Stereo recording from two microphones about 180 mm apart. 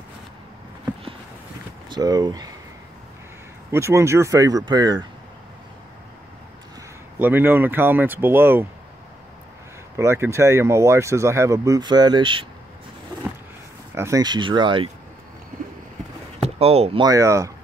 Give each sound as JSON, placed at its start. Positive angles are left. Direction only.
{"t": 1.9, "sound": "speech", "side_deg": -20}
{"t": 3.7, "sound": "speech", "side_deg": -15}
{"t": 7.2, "sound": "speech", "side_deg": -10}
{"t": 9.9, "sound": "speech", "side_deg": -15}
{"t": 13.9, "sound": "speech", "side_deg": -15}
{"t": 16.3, "sound": "chop", "side_deg": -35}
{"t": 17.0, "sound": "speech", "side_deg": -20}